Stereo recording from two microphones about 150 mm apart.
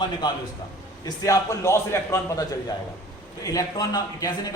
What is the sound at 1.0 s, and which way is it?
A man's voice, 20° left (ahead or behind).